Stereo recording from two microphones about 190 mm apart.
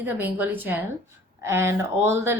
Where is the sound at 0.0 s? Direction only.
10° right (ahead or behind).